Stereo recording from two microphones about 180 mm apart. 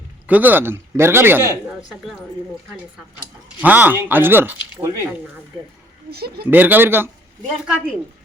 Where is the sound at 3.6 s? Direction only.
10° right (ahead or behind).